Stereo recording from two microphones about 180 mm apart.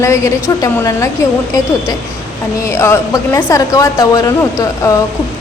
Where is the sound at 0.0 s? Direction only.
15° left (ahead or behind).